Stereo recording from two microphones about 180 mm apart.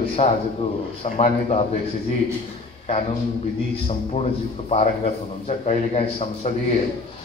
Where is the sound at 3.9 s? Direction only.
35° left (ahead or behind).